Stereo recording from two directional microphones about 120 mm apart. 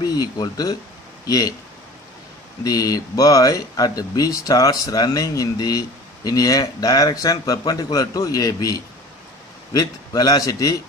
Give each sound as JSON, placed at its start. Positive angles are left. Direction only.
{"t": 0.0, "sound": "speech", "side_deg": 35}
{"t": 2.6, "sound": "speech", "side_deg": 30}